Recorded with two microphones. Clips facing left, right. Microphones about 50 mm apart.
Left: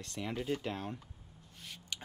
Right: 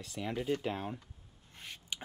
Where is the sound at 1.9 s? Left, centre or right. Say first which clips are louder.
Right 2 dB; centre.